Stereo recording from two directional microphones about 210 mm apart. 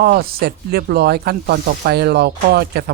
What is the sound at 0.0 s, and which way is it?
Speech, 50° right (ahead or behind).